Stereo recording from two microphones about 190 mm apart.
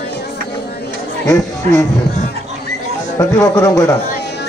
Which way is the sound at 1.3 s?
15° left (ahead or behind).